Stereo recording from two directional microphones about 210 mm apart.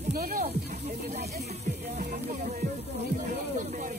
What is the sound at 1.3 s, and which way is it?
Music, 30° right (ahead or behind).